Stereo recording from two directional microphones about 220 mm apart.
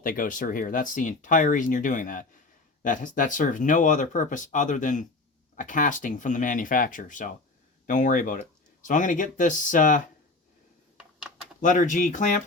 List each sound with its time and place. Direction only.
0.0 s speech: 40° left (ahead or behind)
10.9 s typing: 5° right (ahead or behind)
11.6 s speech: 35° left (ahead or behind)